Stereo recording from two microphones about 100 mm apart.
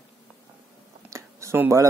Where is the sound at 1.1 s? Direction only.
30° right (ahead or behind).